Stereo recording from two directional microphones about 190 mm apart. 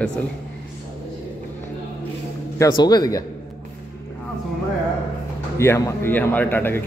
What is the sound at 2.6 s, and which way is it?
Speech, 20° left (ahead or behind).